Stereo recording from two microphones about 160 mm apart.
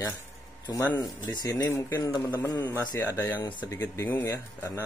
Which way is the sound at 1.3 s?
25° left (ahead or behind).